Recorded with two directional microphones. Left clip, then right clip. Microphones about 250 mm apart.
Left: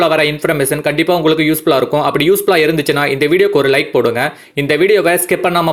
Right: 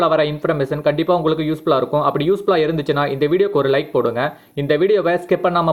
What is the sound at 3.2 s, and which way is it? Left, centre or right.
Speech, left.